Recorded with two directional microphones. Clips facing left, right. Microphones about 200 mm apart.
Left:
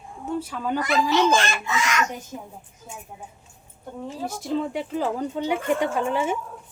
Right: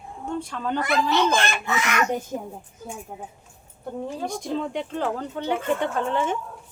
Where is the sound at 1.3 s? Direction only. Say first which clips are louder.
Left 1 dB; 60° right (ahead or behind).